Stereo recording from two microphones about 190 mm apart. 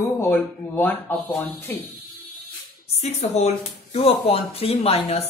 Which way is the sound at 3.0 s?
35° left (ahead or behind).